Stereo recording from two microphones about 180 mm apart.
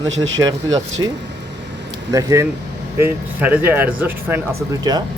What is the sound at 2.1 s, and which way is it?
Speech, 20° right (ahead or behind).